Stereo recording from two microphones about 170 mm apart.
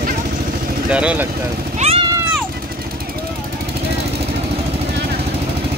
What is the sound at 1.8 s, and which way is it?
Vehicle, 35° right (ahead or behind).